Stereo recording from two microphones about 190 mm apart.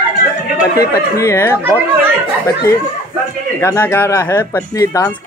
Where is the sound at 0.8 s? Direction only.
15° left (ahead or behind).